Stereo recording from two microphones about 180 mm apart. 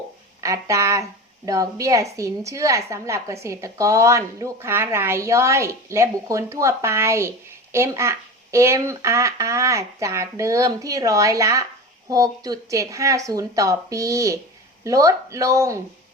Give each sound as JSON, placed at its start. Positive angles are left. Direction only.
{"t": 0.4, "sound": "a woman's voice", "side_deg": -15}